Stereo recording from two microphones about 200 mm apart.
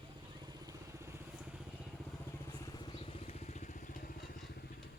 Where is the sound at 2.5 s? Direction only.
20° left (ahead or behind); by 4.2 s 45° left (ahead or behind).